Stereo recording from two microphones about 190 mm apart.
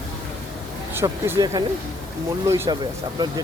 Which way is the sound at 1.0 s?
10° right (ahead or behind).